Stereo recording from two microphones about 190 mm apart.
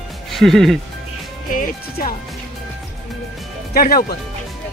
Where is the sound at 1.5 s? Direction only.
45° left (ahead or behind).